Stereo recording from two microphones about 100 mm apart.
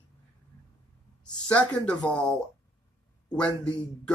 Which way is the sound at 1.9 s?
10° left (ahead or behind).